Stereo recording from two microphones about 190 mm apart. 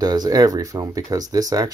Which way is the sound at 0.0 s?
20° right (ahead or behind).